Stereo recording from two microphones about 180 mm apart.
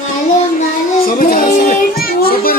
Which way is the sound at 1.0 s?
55° left (ahead or behind).